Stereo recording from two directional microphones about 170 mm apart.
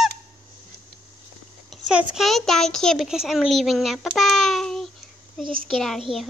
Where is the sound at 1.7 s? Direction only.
5° right (ahead or behind).